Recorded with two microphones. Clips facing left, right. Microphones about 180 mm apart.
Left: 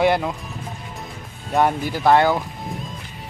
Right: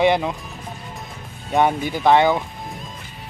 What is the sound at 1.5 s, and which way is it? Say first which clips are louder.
Speech: right 1 dB; 5° left (ahead or behind).